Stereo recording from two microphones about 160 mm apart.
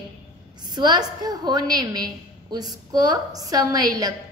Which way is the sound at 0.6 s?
25° right (ahead or behind).